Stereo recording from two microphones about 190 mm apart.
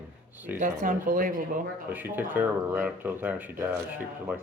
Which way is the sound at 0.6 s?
45° right (ahead or behind).